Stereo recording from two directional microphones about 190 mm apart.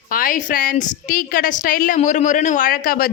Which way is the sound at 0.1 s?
45° left (ahead or behind).